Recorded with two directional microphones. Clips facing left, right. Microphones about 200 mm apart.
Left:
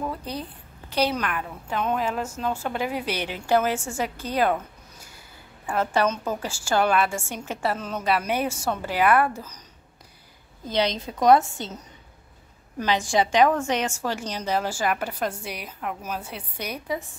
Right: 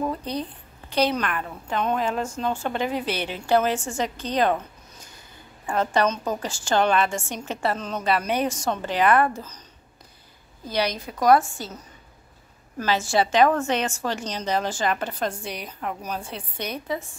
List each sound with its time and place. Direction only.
0.2 s a woman's voice: 5° left (ahead or behind)
5.7 s a woman's voice: 10° left (ahead or behind)
10.6 s a woman's voice: 20° left (ahead or behind)